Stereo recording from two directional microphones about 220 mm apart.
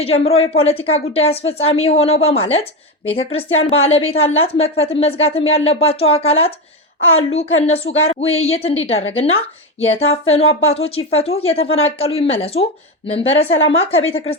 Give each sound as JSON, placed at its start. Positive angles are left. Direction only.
{"t": 0.0, "sound": "a woman's voice", "side_deg": 25}
{"t": 13.2, "sound": "a woman's voice", "side_deg": 60}
{"t": 13.7, "sound": "a woman's voice", "side_deg": 25}